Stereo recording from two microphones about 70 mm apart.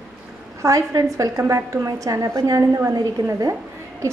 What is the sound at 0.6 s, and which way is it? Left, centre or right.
A woman's voice, right.